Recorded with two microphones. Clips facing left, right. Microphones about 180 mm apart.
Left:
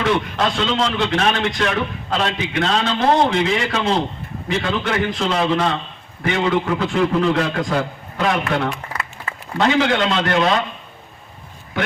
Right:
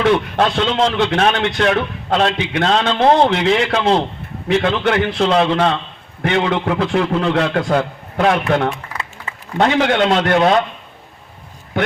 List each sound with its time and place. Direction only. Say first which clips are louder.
0.3 s a man's voice: right 4 dB; 60° right (ahead or behind)